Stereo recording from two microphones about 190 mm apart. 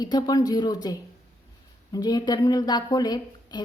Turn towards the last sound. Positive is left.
turn(degrees=20)  # may be behind; listen again after turning